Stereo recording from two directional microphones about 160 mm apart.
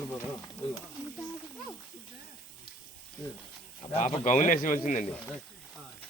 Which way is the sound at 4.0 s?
45° left (ahead or behind).